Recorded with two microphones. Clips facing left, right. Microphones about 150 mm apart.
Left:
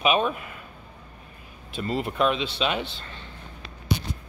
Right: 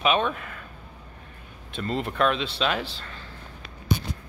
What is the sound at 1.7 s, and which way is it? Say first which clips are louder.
Speech: left 1 dB; 5° left (ahead or behind).